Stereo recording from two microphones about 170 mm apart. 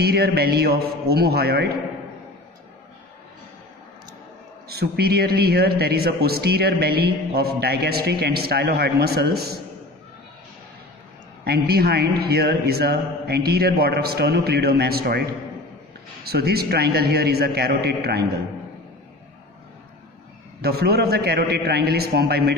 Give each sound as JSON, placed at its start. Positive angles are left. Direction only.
{"t": 0.0, "sound": "a man's voice", "side_deg": -70}
{"t": 4.6, "sound": "a man's voice", "side_deg": -70}
{"t": 11.4, "sound": "a man's voice", "side_deg": -65}
{"t": 16.3, "sound": "a man's voice", "side_deg": -65}
{"t": 20.6, "sound": "a man's voice", "side_deg": -65}